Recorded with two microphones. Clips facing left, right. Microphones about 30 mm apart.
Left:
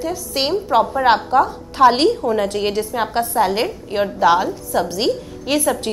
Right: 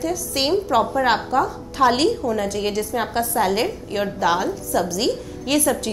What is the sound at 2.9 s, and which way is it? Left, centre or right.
A woman's voice, centre.